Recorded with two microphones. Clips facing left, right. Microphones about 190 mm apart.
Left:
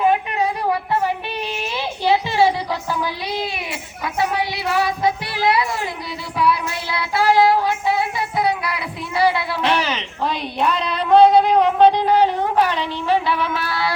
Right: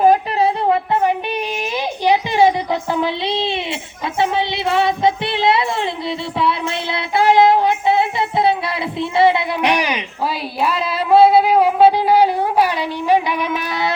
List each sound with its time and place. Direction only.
0.0 s a sound: 35° right (ahead or behind)
1.7 s music: 15° right (ahead or behind)
4.2 s child singing: 25° right (ahead or behind)